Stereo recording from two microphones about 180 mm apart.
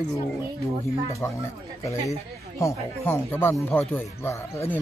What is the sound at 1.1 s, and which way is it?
Speech, 15° left (ahead or behind).